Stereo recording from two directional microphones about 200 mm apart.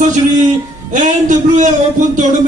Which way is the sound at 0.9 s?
40° right (ahead or behind).